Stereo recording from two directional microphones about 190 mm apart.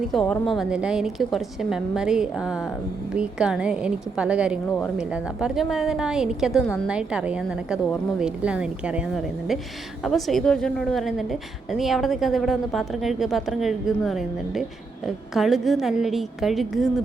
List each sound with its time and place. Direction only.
0.1 s a woman's voice: centre (ahead or behind)